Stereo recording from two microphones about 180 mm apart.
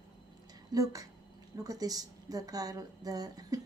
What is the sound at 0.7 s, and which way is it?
A woman's voice, 20° right (ahead or behind).